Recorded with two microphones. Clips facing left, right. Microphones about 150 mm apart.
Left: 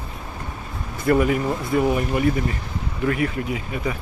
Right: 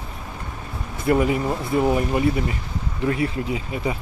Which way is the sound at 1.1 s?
20° right (ahead or behind).